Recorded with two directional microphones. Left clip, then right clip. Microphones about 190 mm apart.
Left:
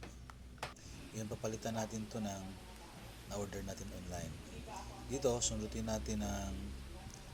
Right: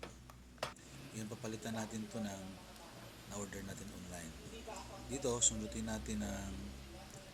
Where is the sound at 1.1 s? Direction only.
Centre (ahead or behind).